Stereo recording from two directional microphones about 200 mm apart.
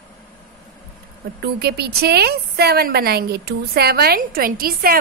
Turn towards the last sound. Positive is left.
turn(degrees=-50)  # may be behind; listen again after turning